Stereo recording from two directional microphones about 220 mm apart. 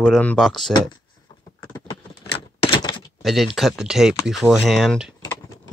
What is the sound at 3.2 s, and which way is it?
Speech, centre (ahead or behind).